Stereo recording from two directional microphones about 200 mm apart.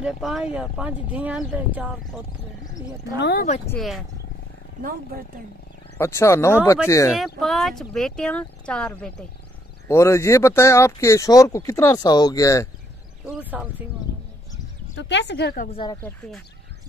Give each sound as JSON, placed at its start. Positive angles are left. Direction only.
{"t": 0.0, "sound": "speech", "side_deg": 0}
{"t": 3.2, "sound": "speech", "side_deg": 55}
{"t": 3.6, "sound": "speech", "side_deg": 5}
{"t": 5.9, "sound": "speech", "side_deg": 15}
{"t": 7.2, "sound": "speech", "side_deg": 0}
{"t": 13.2, "sound": "speech", "side_deg": -10}
{"t": 15.0, "sound": "speech", "side_deg": 60}
{"t": 15.6, "sound": "speech", "side_deg": 25}